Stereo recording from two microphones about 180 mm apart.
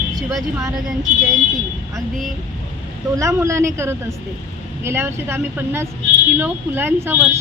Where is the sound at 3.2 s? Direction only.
15° right (ahead or behind).